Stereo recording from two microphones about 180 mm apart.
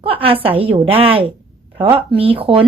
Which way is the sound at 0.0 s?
30° right (ahead or behind).